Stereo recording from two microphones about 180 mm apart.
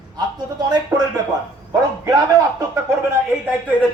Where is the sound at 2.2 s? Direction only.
20° right (ahead or behind).